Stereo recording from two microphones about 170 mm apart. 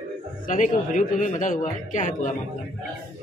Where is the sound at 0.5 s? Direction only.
50° left (ahead or behind).